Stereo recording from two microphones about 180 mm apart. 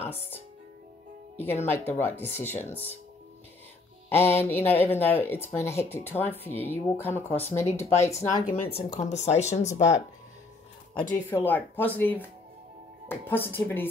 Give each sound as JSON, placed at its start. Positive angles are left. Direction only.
{"t": 0.0, "sound": "speech", "side_deg": 10}
{"t": 1.4, "sound": "speech", "side_deg": 10}
{"t": 4.1, "sound": "music", "side_deg": 15}
{"t": 4.5, "sound": "speech", "side_deg": 10}
{"t": 7.3, "sound": "speech", "side_deg": 35}
{"t": 8.0, "sound": "speech", "side_deg": 15}
{"t": 8.5, "sound": "speech", "side_deg": 60}
{"t": 8.9, "sound": "speech", "side_deg": 40}
{"t": 11.0, "sound": "speech", "side_deg": 10}